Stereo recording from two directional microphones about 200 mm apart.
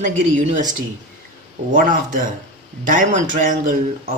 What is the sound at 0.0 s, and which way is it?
Speech, 40° right (ahead or behind).